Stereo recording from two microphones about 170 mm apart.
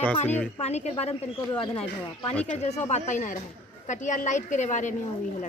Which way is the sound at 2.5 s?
40° left (ahead or behind).